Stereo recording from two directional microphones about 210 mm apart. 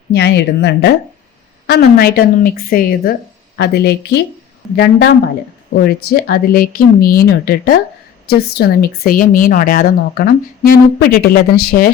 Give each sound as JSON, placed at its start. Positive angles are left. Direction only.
{"t": 0.1, "sound": "a woman's voice", "side_deg": 50}
{"t": 4.6, "sound": "speech", "side_deg": 0}
{"t": 5.7, "sound": "a woman's voice", "side_deg": 50}